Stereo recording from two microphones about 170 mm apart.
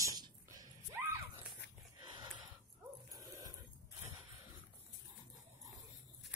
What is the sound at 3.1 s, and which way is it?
Dog, 20° right (ahead or behind).